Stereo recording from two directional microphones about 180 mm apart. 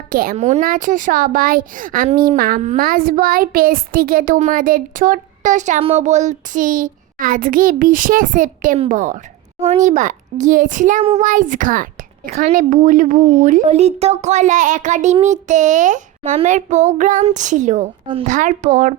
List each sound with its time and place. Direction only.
0.1 s a woman's voice: 50° right (ahead or behind)
0.3 s a woman's voice: 40° right (ahead or behind)